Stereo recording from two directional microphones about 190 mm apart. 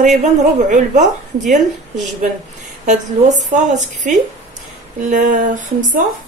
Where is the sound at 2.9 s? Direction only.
40° right (ahead or behind).